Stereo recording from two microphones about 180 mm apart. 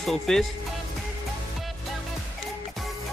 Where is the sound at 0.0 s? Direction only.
Centre (ahead or behind).